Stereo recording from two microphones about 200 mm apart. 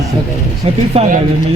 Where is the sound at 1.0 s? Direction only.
30° right (ahead or behind).